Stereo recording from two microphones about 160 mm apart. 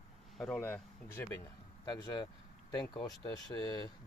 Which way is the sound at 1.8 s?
25° left (ahead or behind).